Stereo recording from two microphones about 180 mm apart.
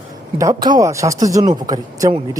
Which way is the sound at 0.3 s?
20° right (ahead or behind).